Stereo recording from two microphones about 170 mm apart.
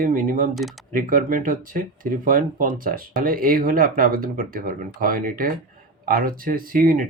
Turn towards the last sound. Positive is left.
turn(degrees=-55)  # may be behind; listen again after turning